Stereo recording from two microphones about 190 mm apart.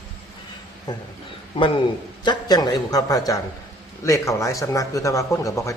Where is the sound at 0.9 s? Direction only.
20° left (ahead or behind).